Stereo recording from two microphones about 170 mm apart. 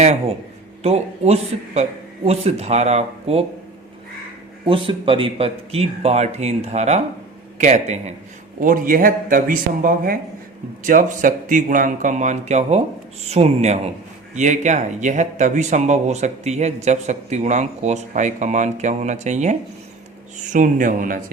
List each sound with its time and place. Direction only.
0.0 s a man's voice: 40° right (ahead or behind)
4.9 s a man's voice: 30° right (ahead or behind)
8.6 s a man's voice: 55° right (ahead or behind)